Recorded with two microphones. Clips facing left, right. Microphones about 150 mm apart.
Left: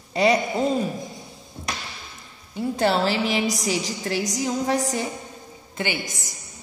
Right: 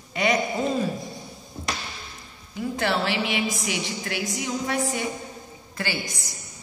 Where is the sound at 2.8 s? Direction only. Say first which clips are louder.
Left 4 dB; 35° left (ahead or behind).